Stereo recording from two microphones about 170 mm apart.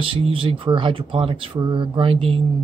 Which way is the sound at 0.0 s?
30° right (ahead or behind).